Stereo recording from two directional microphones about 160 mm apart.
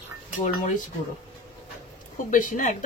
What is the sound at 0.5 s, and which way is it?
Speech, 55° left (ahead or behind).